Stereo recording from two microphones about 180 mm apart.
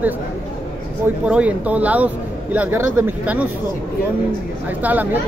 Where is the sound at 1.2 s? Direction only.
5° right (ahead or behind).